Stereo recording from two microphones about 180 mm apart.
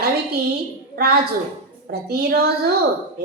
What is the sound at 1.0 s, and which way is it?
Speech, 60° right (ahead or behind).